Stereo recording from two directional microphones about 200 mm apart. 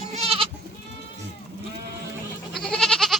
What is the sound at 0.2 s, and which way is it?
Goat, 30° right (ahead or behind).